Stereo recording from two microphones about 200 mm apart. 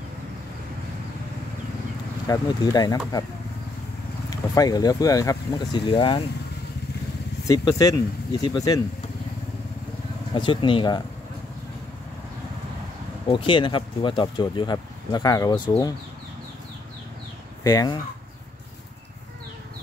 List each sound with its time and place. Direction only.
2.2 s speech: 15° left (ahead or behind)
4.3 s speech: 20° left (ahead or behind)
7.4 s speech: 15° left (ahead or behind)
10.3 s speech: 25° left (ahead or behind)
13.3 s speech: 25° left (ahead or behind)
17.6 s speech: 20° left (ahead or behind)